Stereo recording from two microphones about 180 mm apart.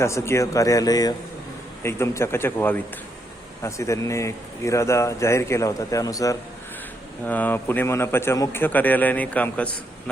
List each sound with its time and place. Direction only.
0.0 s speech: 15° left (ahead or behind)